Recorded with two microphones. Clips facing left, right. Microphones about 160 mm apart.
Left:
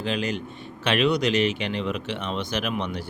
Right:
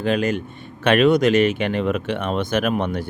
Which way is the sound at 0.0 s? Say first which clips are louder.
Right 6 dB; 50° right (ahead or behind).